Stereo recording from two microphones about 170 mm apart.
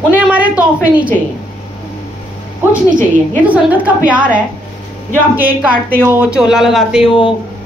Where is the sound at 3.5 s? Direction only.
10° right (ahead or behind).